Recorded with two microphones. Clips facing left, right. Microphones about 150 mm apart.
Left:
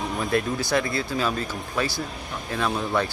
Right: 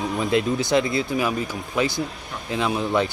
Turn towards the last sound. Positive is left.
turn(degrees=-15)  # may be behind; listen again after turning